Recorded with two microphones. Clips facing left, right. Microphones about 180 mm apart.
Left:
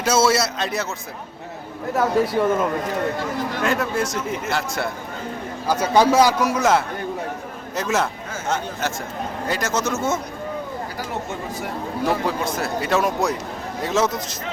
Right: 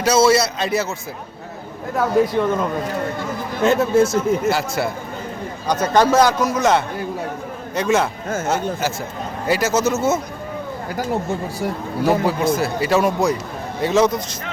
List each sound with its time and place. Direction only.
0.0 s a man's voice: centre (ahead or behind)
2.0 s a man's voice: 5° left (ahead or behind)
3.6 s speech: 25° right (ahead or behind)
4.4 s a man's voice: 5° right (ahead or behind)
5.6 s a man's voice: 10° left (ahead or behind)
12.0 s a man's voice: 5° right (ahead or behind)